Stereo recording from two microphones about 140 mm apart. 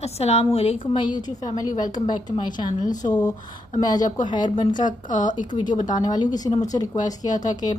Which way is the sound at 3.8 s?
30° left (ahead or behind).